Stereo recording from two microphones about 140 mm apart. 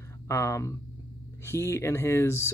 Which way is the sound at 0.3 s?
20° left (ahead or behind).